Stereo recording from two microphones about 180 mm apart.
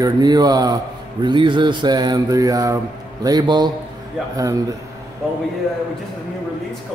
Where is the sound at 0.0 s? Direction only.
20° right (ahead or behind).